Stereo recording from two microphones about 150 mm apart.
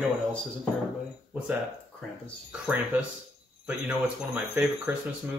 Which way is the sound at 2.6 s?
10° right (ahead or behind).